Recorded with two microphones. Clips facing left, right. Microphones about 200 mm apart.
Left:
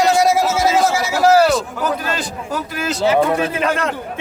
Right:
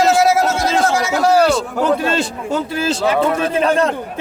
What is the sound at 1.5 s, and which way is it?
A man's voice, 25° right (ahead or behind).